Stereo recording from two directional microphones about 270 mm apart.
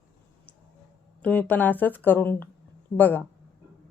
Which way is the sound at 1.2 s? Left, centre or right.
Centre.